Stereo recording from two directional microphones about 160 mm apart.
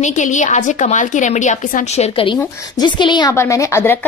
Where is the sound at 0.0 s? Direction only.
50° left (ahead or behind).